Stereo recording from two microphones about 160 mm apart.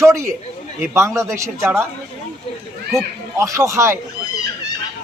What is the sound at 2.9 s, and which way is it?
A man's voice, 20° right (ahead or behind).